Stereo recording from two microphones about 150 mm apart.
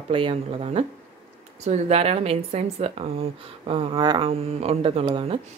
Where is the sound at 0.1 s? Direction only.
35° right (ahead or behind).